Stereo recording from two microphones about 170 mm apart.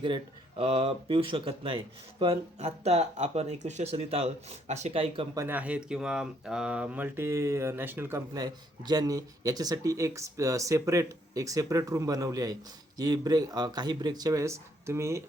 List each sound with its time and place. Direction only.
0.0 s speech: 30° right (ahead or behind)
5.4 s speech: 10° right (ahead or behind)